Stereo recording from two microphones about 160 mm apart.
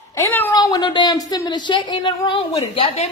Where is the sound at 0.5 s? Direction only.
25° left (ahead or behind).